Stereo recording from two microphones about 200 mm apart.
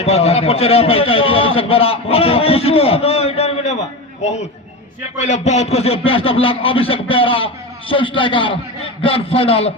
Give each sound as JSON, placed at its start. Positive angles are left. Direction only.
{"t": 0.0, "sound": "a man's voice", "side_deg": 30}